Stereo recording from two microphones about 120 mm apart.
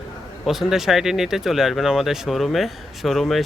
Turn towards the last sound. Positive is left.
turn(degrees=0)  # may be behind; listen again after turning